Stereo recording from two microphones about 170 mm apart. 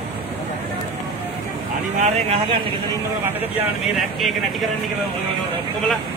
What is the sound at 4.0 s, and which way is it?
Speech, centre (ahead or behind).